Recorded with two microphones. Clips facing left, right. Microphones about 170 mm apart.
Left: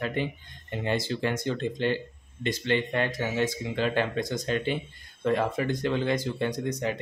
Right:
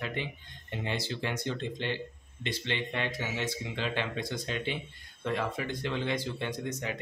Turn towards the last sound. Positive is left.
turn(degrees=40)  # may be behind; listen again after turning